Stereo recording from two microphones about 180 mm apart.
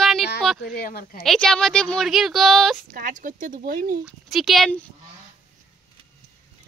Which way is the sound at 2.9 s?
50° right (ahead or behind).